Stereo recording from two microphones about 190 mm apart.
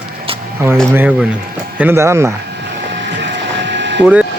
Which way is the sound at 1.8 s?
15° right (ahead or behind).